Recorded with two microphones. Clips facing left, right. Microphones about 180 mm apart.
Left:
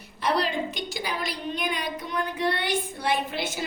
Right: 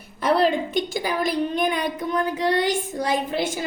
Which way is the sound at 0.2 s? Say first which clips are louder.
Right 6 dB; 50° right (ahead or behind).